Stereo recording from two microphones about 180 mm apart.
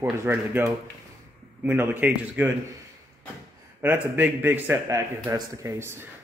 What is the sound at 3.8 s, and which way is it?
A man's voice, 10° right (ahead or behind).